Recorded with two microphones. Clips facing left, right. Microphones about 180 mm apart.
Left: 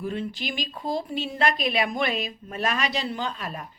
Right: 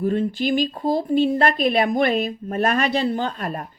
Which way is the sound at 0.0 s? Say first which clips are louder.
Right 9 dB; 50° right (ahead or behind).